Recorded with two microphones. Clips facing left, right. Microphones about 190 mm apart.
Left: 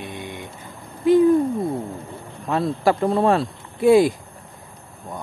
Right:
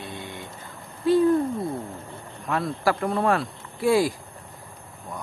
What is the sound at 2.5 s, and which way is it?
Speech, 25° left (ahead or behind).